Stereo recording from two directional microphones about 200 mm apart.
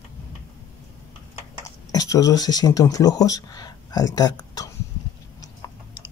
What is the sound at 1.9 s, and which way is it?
Speech, 15° left (ahead or behind).